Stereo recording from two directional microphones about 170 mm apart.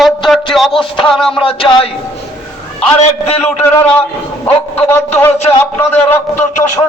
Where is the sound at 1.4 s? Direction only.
30° left (ahead or behind).